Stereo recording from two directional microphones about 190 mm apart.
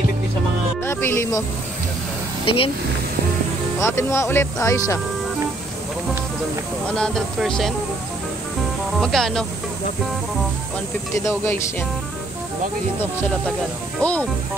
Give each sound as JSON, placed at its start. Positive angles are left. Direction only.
{"t": 0.8, "sound": "music", "side_deg": 15}
{"t": 2.4, "sound": "speech", "side_deg": 30}
{"t": 3.8, "sound": "speech", "side_deg": 15}
{"t": 6.9, "sound": "speech", "side_deg": 5}
{"t": 9.0, "sound": "speech", "side_deg": 0}
{"t": 11.1, "sound": "speech", "side_deg": 15}
{"t": 14.0, "sound": "speech", "side_deg": 10}